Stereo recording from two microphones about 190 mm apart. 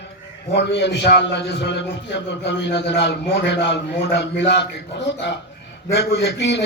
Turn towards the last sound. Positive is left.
turn(degrees=65)  # may be behind; listen again after turning